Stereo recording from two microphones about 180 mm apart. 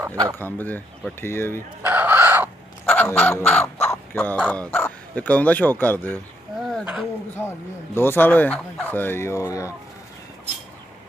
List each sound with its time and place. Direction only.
0.0 s speech: 20° right (ahead or behind)
0.4 s speech: 10° left (ahead or behind)
1.8 s fowl: 10° right (ahead or behind)
2.8 s speech: 10° left (ahead or behind)
6.7 s a sound: centre (ahead or behind)
7.4 s speech: 10° left (ahead or behind)